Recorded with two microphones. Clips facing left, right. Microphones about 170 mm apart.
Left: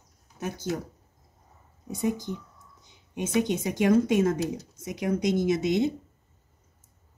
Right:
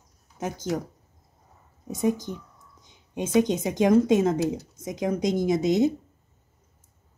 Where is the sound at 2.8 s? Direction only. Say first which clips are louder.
Right 2 dB; 20° right (ahead or behind).